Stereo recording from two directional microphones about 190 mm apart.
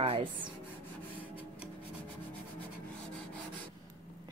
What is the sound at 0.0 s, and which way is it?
Rub, 30° right (ahead or behind).